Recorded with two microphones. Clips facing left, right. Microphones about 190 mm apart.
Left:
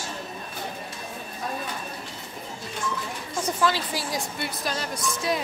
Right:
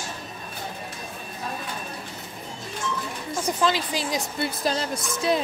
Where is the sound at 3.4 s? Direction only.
15° right (ahead or behind).